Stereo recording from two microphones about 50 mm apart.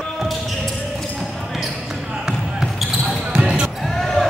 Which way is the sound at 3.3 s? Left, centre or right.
Centre.